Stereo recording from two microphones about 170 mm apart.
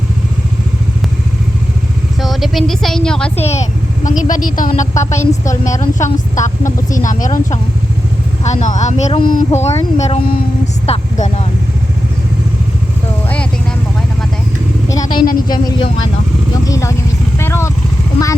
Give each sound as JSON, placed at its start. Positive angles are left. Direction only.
{"t": 2.2, "sound": "speech", "side_deg": 0}
{"t": 3.4, "sound": "speech", "side_deg": 40}
{"t": 4.2, "sound": "a woman's voice", "side_deg": 50}
{"t": 9.6, "sound": "speech", "side_deg": 40}
{"t": 13.2, "sound": "vehicle", "side_deg": 5}
{"t": 14.8, "sound": "a woman's voice", "side_deg": 20}
{"t": 17.3, "sound": "vehicle", "side_deg": 15}